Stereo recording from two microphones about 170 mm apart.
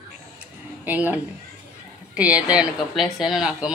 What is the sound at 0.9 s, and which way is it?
A woman's voice, 10° right (ahead or behind).